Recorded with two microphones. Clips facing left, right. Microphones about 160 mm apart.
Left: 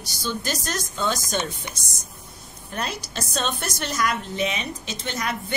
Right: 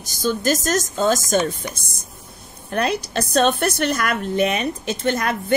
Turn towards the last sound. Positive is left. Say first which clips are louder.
# right 7 dB
turn(degrees=-55)  # may be behind; listen again after turning